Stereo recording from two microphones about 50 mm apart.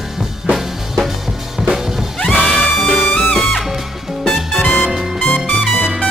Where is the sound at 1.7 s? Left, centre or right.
Centre.